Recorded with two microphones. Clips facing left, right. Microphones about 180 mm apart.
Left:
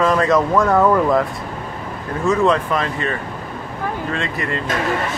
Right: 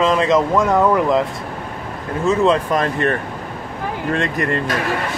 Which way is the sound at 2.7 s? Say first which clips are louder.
Right 3 dB; 55° right (ahead or behind).